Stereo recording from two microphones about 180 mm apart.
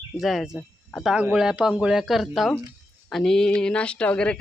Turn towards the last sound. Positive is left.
turn(degrees=5)  # may be behind; listen again after turning